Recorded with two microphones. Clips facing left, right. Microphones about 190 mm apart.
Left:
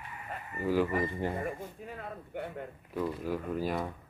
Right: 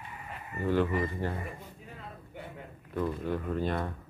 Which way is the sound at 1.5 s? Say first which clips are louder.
Left 5 dB; 55° left (ahead or behind).